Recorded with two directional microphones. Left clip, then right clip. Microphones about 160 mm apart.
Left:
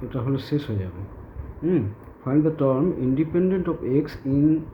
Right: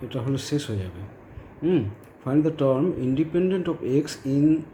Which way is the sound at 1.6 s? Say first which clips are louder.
Even; 20° right (ahead or behind).